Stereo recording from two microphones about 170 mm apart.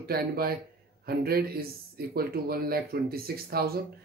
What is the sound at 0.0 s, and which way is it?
Speech, 65° right (ahead or behind).